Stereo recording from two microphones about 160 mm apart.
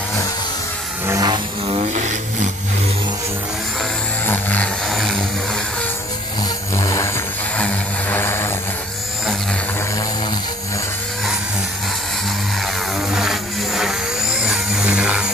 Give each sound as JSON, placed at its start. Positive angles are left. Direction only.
{"t": 1.0, "sound": "vehicle", "side_deg": -20}
{"t": 2.0, "sound": "vehicle", "side_deg": -50}
{"t": 4.3, "sound": "vehicle", "side_deg": 10}
{"t": 6.8, "sound": "a sound", "side_deg": 20}
{"t": 7.5, "sound": "vehicle", "side_deg": 10}
{"t": 13.1, "sound": "a sound", "side_deg": -5}